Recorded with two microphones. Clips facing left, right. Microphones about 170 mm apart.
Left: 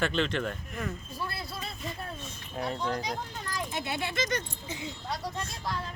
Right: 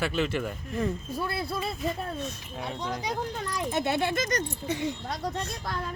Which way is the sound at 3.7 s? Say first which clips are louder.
Right 11 dB; 45° right (ahead or behind).